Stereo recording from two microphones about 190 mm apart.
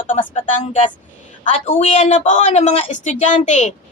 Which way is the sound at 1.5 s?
30° left (ahead or behind).